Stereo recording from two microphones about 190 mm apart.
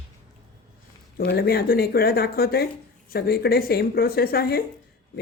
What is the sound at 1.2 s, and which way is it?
Speech, 50° left (ahead or behind).